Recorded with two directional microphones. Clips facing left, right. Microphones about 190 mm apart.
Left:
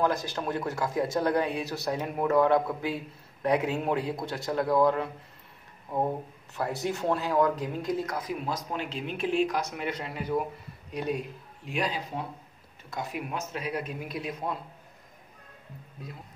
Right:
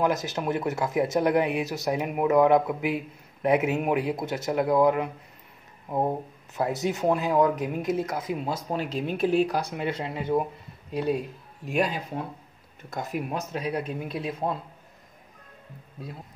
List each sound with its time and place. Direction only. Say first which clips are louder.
0.0 s speech: right 2 dB; 20° right (ahead or behind)
6.5 s speech: right 4 dB; 20° right (ahead or behind)
8.8 s speech: right 8 dB; 40° right (ahead or behind)
11.6 s speech: right 5 dB; 50° right (ahead or behind); by 14.6 s 30° right (ahead or behind)